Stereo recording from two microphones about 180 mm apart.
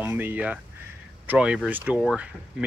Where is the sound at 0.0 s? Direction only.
10° right (ahead or behind).